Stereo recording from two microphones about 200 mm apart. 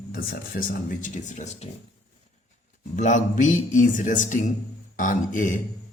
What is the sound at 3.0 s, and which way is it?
A man's voice, 40° left (ahead or behind).